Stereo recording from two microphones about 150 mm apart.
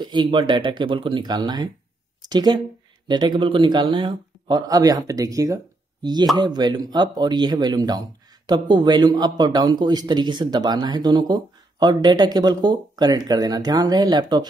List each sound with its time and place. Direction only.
0.0 s a man's voice: 30° right (ahead or behind)